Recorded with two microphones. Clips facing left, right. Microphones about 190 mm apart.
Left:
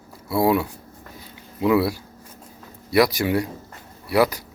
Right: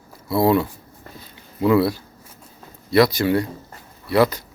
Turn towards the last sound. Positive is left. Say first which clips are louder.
# right 2 dB
turn(degrees=10)  # may be behind; listen again after turning